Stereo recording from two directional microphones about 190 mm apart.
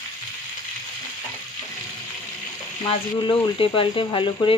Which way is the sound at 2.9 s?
30° left (ahead or behind).